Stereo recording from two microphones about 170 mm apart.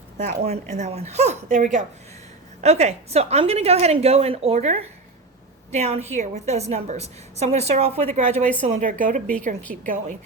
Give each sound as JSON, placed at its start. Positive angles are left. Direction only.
{"t": 0.3, "sound": "a woman's voice", "side_deg": -40}